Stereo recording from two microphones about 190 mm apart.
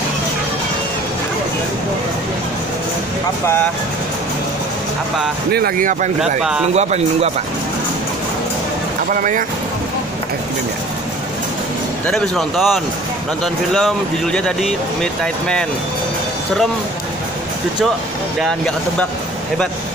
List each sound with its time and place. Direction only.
5.5 s speech: 55° right (ahead or behind); by 7.2 s 35° right (ahead or behind)
9.1 s speech: 45° right (ahead or behind)
12.1 s speech: centre (ahead or behind)